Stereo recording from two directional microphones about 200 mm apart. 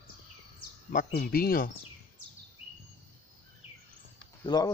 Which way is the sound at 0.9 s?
45° left (ahead or behind).